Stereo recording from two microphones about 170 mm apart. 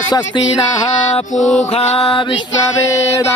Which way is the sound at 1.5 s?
40° left (ahead or behind).